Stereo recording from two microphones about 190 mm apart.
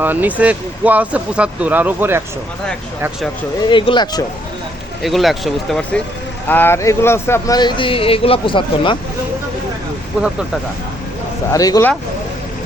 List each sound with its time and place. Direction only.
0.0 s speech: 10° right (ahead or behind)
3.7 s speech: 25° left (ahead or behind)
5.0 s speech: centre (ahead or behind); by 9.0 s 25° left (ahead or behind)
11.5 s speech: 20° left (ahead or behind)